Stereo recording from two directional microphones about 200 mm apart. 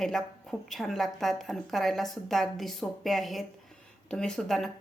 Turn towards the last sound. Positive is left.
turn(degrees=0)  # may be behind; listen again after turning